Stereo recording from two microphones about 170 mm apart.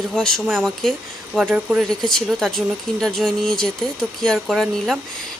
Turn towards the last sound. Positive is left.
turn(degrees=0)  # may be behind; listen again after turning